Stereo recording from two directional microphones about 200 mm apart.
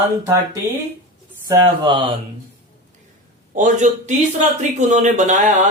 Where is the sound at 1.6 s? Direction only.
25° right (ahead or behind).